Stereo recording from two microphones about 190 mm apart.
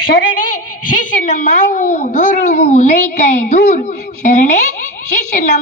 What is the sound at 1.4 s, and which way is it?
A child's voice, 40° left (ahead or behind).